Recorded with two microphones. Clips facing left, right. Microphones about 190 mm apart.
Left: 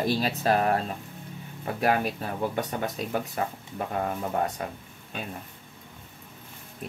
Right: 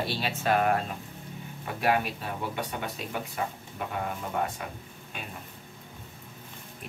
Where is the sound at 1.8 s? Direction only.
40° left (ahead or behind).